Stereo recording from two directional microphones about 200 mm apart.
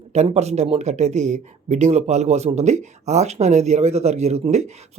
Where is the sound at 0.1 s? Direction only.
35° right (ahead or behind).